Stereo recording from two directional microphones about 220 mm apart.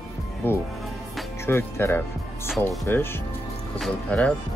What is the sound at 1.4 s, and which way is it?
Speech, 10° left (ahead or behind).